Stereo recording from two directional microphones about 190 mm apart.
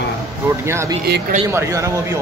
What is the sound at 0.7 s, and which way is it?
A man's voice, 15° right (ahead or behind).